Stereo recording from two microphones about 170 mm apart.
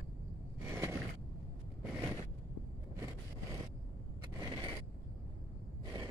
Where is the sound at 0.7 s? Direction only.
15° right (ahead or behind).